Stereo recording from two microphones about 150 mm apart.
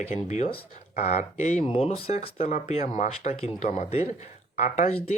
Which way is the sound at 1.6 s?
40° left (ahead or behind).